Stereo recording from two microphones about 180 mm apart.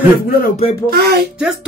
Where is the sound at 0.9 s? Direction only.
60° right (ahead or behind).